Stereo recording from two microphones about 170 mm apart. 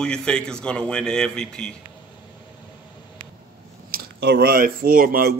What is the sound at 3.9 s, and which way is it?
Speech, 70° right (ahead or behind).